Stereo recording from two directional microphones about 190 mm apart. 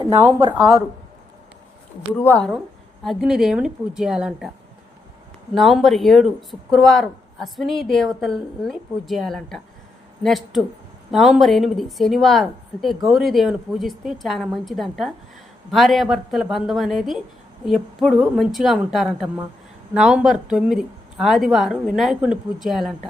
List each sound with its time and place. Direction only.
0.2 s speech: 15° right (ahead or behind)
0.4 s speech: 25° right (ahead or behind)
2.1 s a woman's voice: 10° left (ahead or behind)
5.5 s a man's voice: centre (ahead or behind)